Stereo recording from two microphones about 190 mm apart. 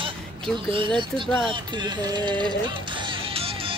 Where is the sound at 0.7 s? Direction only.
25° right (ahead or behind).